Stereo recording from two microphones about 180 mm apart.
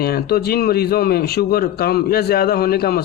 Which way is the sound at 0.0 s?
60° left (ahead or behind).